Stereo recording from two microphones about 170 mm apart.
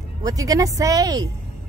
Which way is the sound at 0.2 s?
20° right (ahead or behind).